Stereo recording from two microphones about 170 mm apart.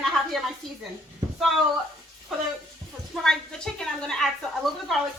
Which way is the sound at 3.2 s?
5° left (ahead or behind).